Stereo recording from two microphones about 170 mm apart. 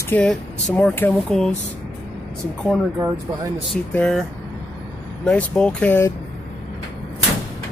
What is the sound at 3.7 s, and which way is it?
Speech, 5° left (ahead or behind).